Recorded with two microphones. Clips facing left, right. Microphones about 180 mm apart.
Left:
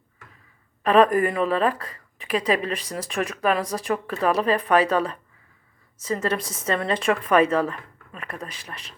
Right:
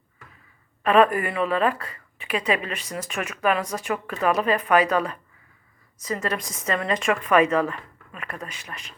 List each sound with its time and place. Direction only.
0.8 s a woman's voice: 35° left (ahead or behind)